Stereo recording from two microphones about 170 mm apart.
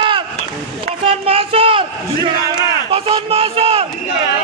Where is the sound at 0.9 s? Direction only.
35° right (ahead or behind).